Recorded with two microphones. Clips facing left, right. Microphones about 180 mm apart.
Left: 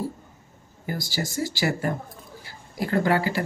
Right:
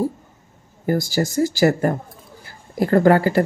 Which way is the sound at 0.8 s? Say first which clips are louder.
Right 10 dB; 45° right (ahead or behind).